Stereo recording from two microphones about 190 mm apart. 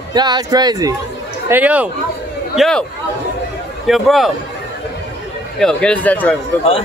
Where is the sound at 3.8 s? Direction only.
Centre (ahead or behind).